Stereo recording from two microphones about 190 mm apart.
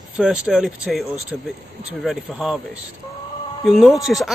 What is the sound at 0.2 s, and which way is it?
Speech, 5° right (ahead or behind).